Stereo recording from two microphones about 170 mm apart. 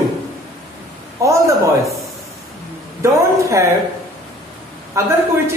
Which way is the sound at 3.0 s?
15° right (ahead or behind).